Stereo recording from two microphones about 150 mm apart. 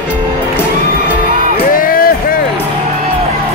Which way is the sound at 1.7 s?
70° left (ahead or behind).